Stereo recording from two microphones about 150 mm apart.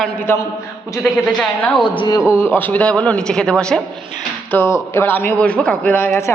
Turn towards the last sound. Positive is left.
turn(degrees=15)  # may be behind; listen again after turning